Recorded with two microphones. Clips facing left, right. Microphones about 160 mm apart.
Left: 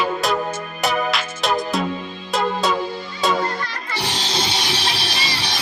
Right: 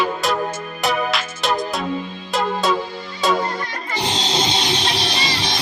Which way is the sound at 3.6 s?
20° right (ahead or behind).